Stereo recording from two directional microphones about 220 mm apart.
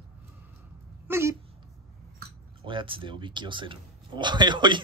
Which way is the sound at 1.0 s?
10° right (ahead or behind).